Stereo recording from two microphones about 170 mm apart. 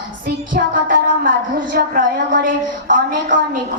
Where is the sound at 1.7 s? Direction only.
60° right (ahead or behind).